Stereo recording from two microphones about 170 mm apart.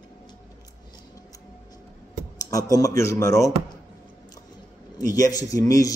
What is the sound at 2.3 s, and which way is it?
Speech, 20° left (ahead or behind).